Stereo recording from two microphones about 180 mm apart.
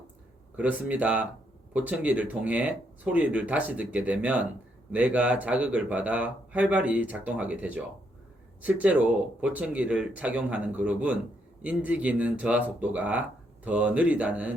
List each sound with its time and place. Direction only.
0.5 s speech: 10° right (ahead or behind)